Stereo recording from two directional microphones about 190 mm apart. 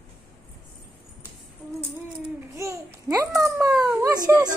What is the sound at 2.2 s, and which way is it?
Babbling, 15° right (ahead or behind).